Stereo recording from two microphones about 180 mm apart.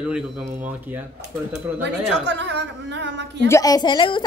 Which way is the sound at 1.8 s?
75° right (ahead or behind).